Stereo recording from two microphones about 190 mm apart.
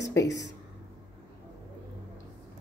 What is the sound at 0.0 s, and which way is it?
Speech, 15° left (ahead or behind).